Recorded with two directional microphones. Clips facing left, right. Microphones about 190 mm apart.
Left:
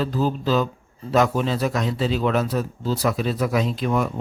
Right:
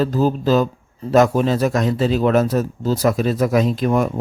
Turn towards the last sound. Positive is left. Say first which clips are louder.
# right 5 dB
turn(degrees=-45)  # may be behind; listen again after turning